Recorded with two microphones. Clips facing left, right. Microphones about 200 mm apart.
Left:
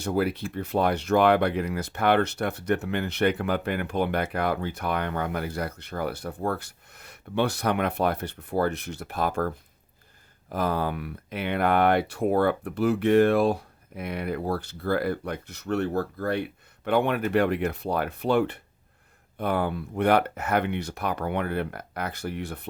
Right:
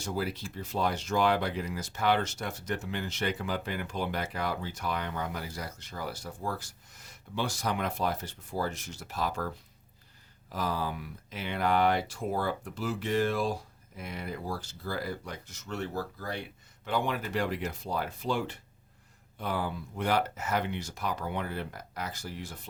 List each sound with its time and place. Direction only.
0.0 s speech: 60° left (ahead or behind)
10.5 s speech: 55° left (ahead or behind)